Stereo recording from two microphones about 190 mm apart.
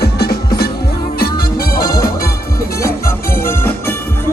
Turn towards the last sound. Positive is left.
turn(degrees=15)  # may be behind; listen again after turning